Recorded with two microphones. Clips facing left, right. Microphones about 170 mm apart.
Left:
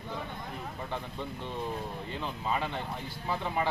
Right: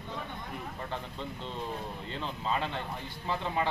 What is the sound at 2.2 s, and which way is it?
Speech, 10° left (ahead or behind).